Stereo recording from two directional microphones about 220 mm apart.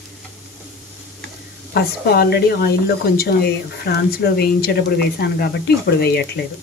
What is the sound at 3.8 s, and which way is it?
Speech, 45° left (ahead or behind).